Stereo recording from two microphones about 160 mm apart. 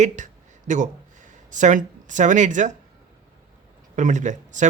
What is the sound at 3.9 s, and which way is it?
Speech, 50° right (ahead or behind).